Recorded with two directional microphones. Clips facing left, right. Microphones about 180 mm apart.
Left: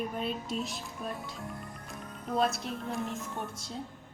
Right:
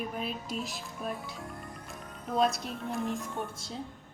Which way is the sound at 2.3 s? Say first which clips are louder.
Right 1 dB; centre (ahead or behind).